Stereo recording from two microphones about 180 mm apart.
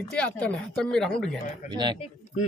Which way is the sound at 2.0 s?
40° left (ahead or behind).